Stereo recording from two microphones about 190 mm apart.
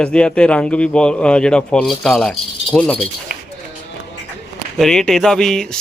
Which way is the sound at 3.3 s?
50° right (ahead or behind).